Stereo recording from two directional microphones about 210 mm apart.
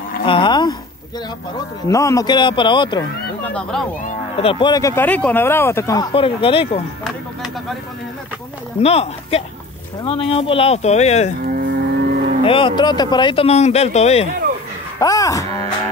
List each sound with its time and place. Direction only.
0.3 s speech: 20° left (ahead or behind)
1.9 s speech: 15° left (ahead or behind)
4.4 s speech: 25° left (ahead or behind)
6.1 s speech: 25° left (ahead or behind)
8.7 s speech: 30° left (ahead or behind)
11.4 s livestock: 45° right (ahead or behind)
12.4 s speech: 25° left (ahead or behind)
15.0 s speech: 15° left (ahead or behind)